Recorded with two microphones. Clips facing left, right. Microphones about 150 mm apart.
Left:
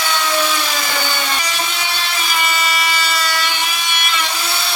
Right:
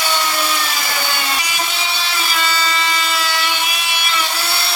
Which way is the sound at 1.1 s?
10° right (ahead or behind).